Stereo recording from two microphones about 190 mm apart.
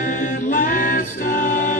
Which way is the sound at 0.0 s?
45° left (ahead or behind).